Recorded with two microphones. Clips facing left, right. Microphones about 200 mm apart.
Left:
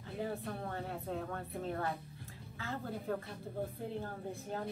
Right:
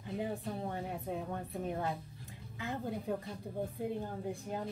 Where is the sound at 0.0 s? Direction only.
15° right (ahead or behind).